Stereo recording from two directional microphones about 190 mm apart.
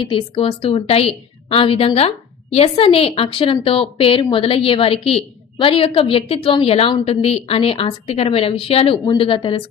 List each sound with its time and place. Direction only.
0.0 s a woman's voice: 30° left (ahead or behind)